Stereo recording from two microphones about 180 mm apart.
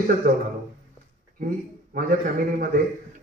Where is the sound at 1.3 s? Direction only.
50° right (ahead or behind).